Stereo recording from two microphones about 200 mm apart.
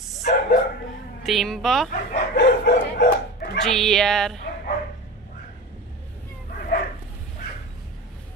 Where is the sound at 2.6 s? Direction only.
55° left (ahead or behind).